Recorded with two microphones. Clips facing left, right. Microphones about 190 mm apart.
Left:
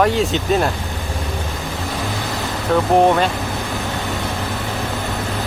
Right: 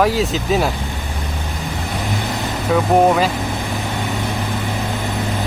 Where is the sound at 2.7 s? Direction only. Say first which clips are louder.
Even; 5° right (ahead or behind).